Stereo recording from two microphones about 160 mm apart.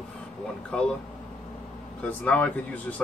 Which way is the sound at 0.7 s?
5° left (ahead or behind).